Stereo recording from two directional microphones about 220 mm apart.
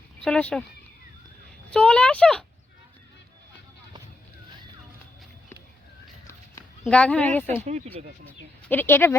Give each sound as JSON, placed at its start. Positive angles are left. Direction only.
{"t": 0.2, "sound": "speech", "side_deg": 5}
{"t": 1.7, "sound": "speech", "side_deg": 5}
{"t": 6.8, "sound": "speech", "side_deg": 5}
{"t": 8.6, "sound": "speech", "side_deg": 10}